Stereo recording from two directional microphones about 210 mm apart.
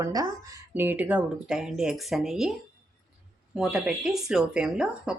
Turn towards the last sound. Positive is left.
turn(degrees=0)  # may be behind; listen again after turning